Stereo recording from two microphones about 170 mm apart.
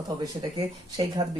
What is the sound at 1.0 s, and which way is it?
Speech, 30° right (ahead or behind).